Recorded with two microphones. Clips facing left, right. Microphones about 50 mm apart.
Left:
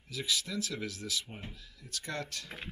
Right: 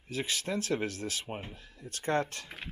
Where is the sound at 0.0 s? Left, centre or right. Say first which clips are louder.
Right 1 dB; right.